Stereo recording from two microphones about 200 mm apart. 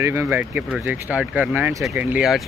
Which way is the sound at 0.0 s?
10° right (ahead or behind).